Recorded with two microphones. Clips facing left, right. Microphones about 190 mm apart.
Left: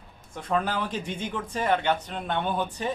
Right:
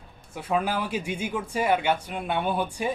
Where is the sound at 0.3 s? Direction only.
10° right (ahead or behind).